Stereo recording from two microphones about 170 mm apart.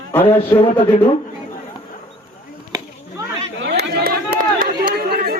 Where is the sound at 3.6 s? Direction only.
75° right (ahead or behind).